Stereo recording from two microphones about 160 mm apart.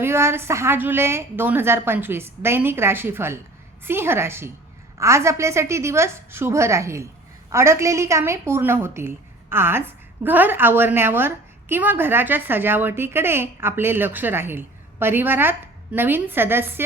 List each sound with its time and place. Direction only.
0.0 s a woman's voice: 15° right (ahead or behind)